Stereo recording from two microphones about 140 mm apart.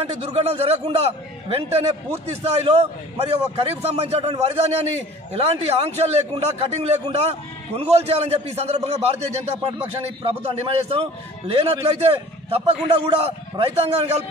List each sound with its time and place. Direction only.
0.0 s a man's voice: 45° right (ahead or behind)